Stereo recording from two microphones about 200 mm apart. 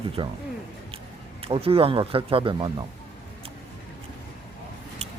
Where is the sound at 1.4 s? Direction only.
30° right (ahead or behind).